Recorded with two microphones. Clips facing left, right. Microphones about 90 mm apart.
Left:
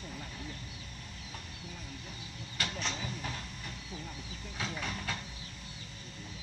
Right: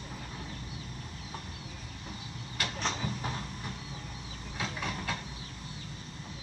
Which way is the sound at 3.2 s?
30° right (ahead or behind).